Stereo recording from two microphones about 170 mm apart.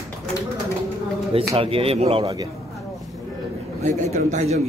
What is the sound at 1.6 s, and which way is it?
Speech, 35° right (ahead or behind).